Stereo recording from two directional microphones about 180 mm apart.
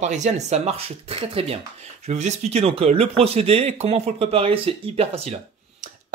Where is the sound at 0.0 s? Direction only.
40° right (ahead or behind).